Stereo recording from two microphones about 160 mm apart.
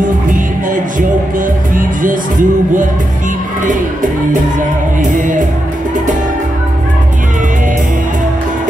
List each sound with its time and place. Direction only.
1.8 s music: 55° right (ahead or behind)
5.1 s music: 55° right (ahead or behind)